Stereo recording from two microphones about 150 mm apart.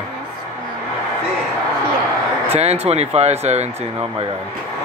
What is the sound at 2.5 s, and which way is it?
Speech, 45° right (ahead or behind).